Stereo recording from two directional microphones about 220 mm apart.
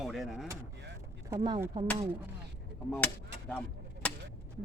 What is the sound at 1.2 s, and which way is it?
Speech, 15° right (ahead or behind).